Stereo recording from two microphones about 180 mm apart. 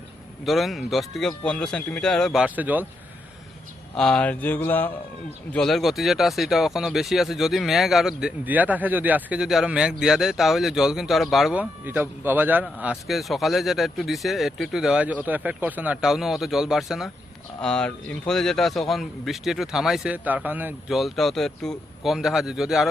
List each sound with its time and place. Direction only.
0.4 s speech: centre (ahead or behind)
3.9 s mantra: 5° left (ahead or behind)
5.5 s speech: centre (ahead or behind)